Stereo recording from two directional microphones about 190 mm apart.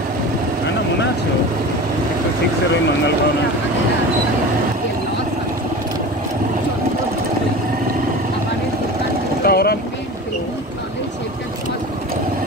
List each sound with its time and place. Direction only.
9.4 s vehicle: 55° left (ahead or behind)